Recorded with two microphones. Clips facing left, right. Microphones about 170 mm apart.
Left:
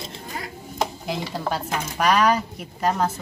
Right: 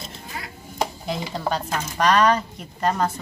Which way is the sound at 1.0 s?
5° left (ahead or behind).